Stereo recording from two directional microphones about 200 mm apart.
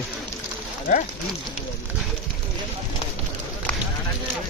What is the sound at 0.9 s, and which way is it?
Speech, 40° left (ahead or behind).